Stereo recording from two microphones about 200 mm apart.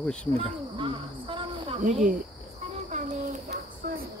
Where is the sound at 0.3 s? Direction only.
25° right (ahead or behind).